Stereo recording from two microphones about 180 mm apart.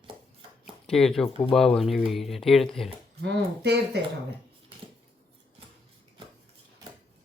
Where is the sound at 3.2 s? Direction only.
70° right (ahead or behind).